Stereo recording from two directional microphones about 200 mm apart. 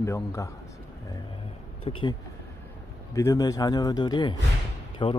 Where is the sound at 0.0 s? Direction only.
15° left (ahead or behind).